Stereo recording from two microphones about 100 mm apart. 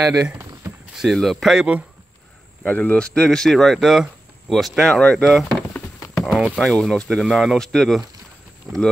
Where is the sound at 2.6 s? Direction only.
15° left (ahead or behind); by 5.6 s centre (ahead or behind).